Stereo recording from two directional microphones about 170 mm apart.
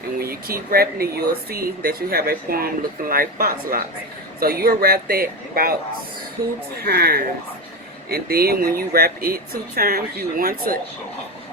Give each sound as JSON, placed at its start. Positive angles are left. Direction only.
{"t": 0.2, "sound": "speech", "side_deg": -60}
{"t": 6.8, "sound": "speech", "side_deg": -65}